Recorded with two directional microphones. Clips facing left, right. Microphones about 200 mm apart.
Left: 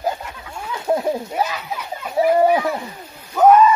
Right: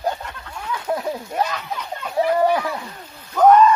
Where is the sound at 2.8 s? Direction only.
10° left (ahead or behind).